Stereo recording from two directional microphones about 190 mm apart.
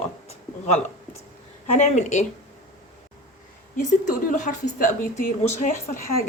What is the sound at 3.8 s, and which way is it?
Speech, 40° left (ahead or behind).